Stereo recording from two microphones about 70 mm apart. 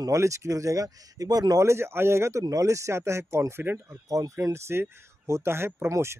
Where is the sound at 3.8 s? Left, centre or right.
Right.